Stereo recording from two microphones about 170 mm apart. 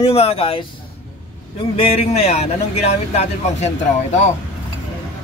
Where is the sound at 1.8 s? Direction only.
40° left (ahead or behind).